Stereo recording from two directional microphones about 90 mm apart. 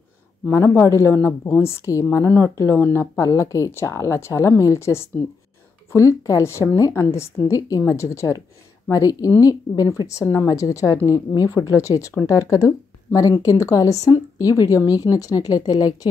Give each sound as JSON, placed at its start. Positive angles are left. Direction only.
{"t": 0.5, "sound": "a woman's voice", "side_deg": 25}